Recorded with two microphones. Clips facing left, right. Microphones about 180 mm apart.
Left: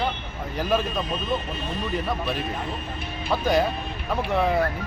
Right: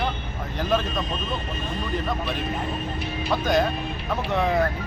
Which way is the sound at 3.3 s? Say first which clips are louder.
Left 1 dB; 10° left (ahead or behind).